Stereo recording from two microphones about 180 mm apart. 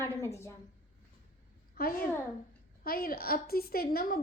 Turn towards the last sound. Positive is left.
turn(degrees=55)  # may be behind; listen again after turning